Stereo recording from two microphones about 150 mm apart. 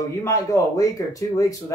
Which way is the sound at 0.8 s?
25° left (ahead or behind).